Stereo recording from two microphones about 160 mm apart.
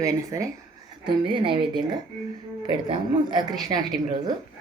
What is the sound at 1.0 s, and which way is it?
Speech, 30° right (ahead or behind).